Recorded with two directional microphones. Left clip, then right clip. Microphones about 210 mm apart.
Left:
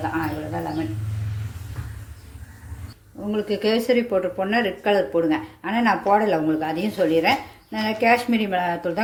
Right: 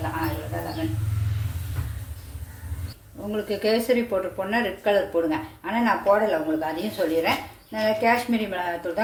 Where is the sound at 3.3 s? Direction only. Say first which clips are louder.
Left 2 dB; 30° left (ahead or behind).